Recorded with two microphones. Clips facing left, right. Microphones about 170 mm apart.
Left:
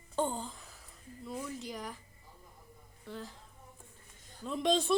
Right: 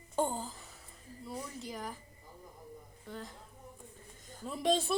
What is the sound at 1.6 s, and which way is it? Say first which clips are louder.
Speech: even; centre (ahead or behind).